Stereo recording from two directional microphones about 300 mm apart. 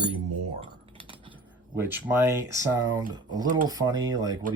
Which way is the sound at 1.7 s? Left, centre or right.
Centre.